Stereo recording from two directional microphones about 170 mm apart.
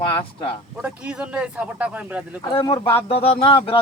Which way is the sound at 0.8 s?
5° right (ahead or behind).